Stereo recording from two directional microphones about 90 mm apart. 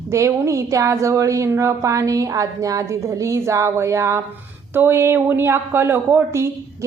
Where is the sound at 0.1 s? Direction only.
35° right (ahead or behind).